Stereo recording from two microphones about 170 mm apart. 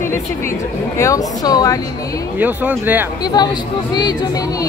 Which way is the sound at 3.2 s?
25° left (ahead or behind).